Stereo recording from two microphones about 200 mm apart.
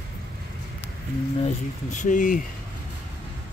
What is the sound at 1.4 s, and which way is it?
Speech, 40° left (ahead or behind).